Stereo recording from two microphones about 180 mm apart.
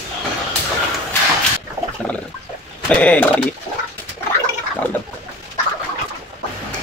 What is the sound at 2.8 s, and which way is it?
Speech, 5° left (ahead or behind).